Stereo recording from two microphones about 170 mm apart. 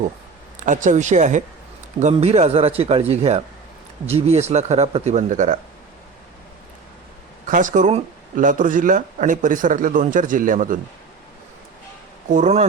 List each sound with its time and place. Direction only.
0.6 s speech: 50° right (ahead or behind)
7.4 s speech: 50° right (ahead or behind)
12.3 s speech: 45° right (ahead or behind)